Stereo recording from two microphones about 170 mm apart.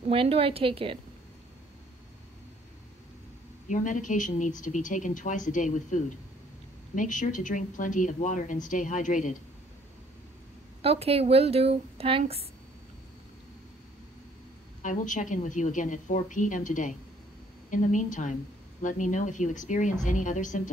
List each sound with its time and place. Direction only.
0.1 s a woman's voice: 35° right (ahead or behind)
3.6 s speech: 50° left (ahead or behind)
10.8 s a woman's voice: 35° right (ahead or behind)
14.8 s speech: 50° left (ahead or behind)